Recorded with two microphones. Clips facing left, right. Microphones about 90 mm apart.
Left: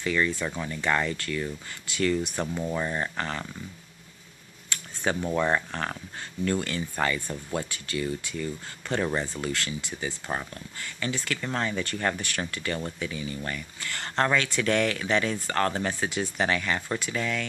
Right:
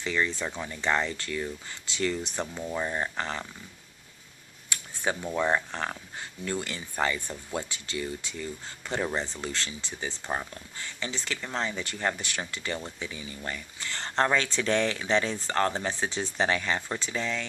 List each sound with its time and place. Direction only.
0.0 s speech: 20° right (ahead or behind)
2.3 s speech: 5° left (ahead or behind)
2.7 s speech: 10° right (ahead or behind)
4.7 s camera: 20° right (ahead or behind)
5.3 s speech: 15° right (ahead or behind)